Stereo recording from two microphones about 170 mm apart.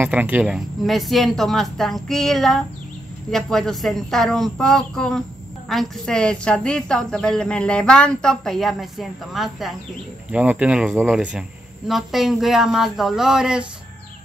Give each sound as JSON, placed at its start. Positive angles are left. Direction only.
{"t": 0.0, "sound": "a woman's voice", "side_deg": -10}